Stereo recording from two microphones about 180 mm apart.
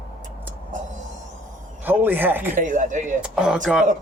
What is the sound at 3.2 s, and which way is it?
Speech, 5° right (ahead or behind).